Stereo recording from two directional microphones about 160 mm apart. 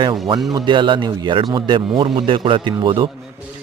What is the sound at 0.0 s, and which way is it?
A man's voice, 30° right (ahead or behind).